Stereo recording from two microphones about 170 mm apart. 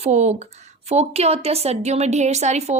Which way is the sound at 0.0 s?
40° right (ahead or behind).